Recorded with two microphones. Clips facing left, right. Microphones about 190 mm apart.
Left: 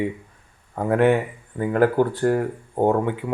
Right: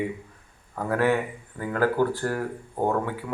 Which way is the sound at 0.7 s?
25° left (ahead or behind).